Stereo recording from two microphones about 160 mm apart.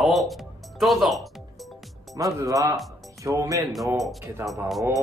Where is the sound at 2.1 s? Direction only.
20° right (ahead or behind).